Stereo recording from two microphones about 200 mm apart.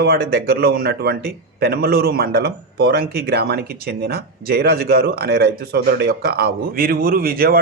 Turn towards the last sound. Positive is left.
turn(degrees=-45)  # may be behind; listen again after turning